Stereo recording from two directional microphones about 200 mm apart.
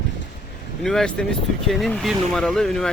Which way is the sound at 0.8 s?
Centre (ahead or behind).